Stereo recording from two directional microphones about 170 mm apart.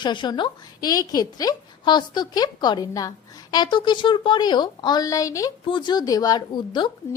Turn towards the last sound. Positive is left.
turn(degrees=15)  # may be behind; listen again after turning